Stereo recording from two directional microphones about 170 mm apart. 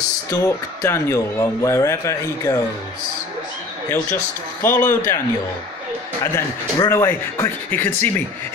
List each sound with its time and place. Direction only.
0.3 s a man's voice: 15° left (ahead or behind)
3.9 s a man's voice: 15° left (ahead or behind)
6.3 s a man's voice: 15° left (ahead or behind)